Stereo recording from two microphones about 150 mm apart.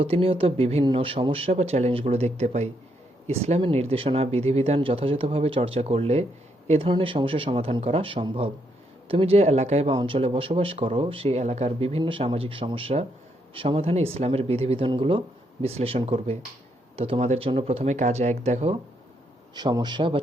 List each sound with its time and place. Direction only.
0.0 s speech: 40° right (ahead or behind)
19.5 s a man's voice: 30° right (ahead or behind)